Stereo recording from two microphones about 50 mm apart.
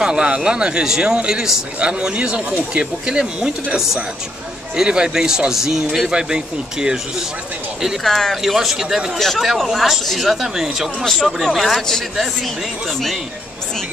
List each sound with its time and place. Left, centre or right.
0.0 s speech: centre
4.7 s speech: centre
8.0 s a man's voice: centre
8.4 s a man's voice: centre